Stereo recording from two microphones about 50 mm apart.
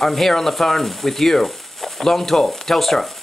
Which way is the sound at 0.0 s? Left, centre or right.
Centre.